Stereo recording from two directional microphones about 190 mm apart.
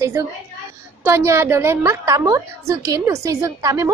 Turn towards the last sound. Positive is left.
turn(degrees=-15)  # may be behind; listen again after turning